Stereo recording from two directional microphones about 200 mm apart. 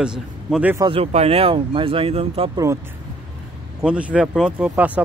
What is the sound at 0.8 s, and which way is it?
Speech, 25° right (ahead or behind).